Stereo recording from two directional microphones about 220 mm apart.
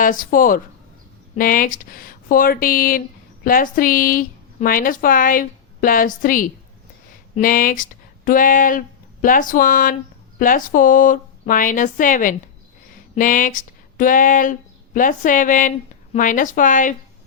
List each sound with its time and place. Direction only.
0.0 s a woman's voice: 40° left (ahead or behind)